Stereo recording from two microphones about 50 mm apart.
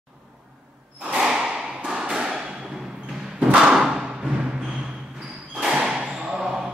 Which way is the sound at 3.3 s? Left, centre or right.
Centre.